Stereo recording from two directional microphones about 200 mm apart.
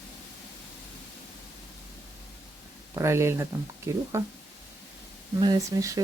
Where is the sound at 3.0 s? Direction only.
15° right (ahead or behind).